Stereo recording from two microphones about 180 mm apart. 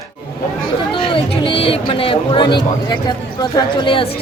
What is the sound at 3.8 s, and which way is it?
Chatter, 30° left (ahead or behind).